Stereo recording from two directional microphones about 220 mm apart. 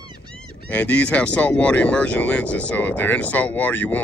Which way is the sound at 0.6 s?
5° left (ahead or behind).